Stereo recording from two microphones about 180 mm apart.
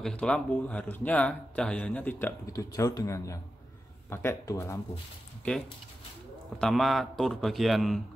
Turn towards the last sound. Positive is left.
turn(degrees=0)  # may be behind; listen again after turning